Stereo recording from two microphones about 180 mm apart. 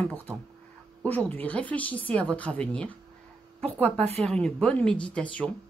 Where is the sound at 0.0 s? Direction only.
10° left (ahead or behind).